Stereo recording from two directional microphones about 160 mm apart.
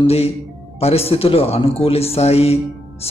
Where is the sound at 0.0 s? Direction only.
40° left (ahead or behind).